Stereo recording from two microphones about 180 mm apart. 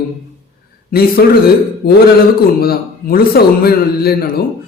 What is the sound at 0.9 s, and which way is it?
A man's voice, 55° left (ahead or behind).